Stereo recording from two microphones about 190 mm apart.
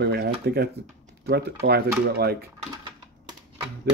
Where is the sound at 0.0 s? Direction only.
60° right (ahead or behind).